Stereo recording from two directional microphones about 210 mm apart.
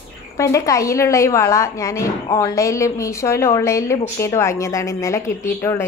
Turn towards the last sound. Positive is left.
turn(degrees=10)  # may be behind; listen again after turning